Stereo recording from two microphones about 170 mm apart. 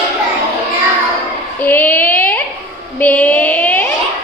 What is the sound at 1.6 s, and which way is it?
Child singing, 10° left (ahead or behind).